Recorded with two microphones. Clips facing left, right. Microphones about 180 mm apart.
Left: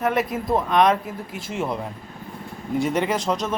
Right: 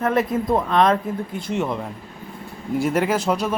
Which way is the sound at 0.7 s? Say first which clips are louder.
Even; 15° left (ahead or behind).